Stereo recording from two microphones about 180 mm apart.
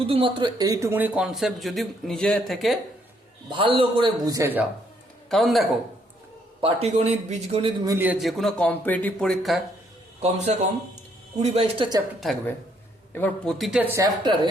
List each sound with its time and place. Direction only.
0.0 s speech: 30° right (ahead or behind); by 2.7 s centre (ahead or behind)
3.5 s a man's voice: 30° right (ahead or behind)
5.3 s speech: centre (ahead or behind)
6.6 s a man's voice: 30° right (ahead or behind)
7.9 s speech: 10° right (ahead or behind)
10.2 s a man's voice: 40° right (ahead or behind)
13.1 s speech: 5° left (ahead or behind); by 14.3 s 15° right (ahead or behind)